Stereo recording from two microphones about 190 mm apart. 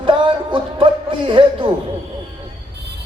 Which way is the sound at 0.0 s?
25° right (ahead or behind).